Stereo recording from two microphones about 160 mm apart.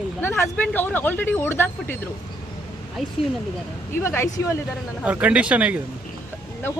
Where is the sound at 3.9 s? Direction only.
15° left (ahead or behind).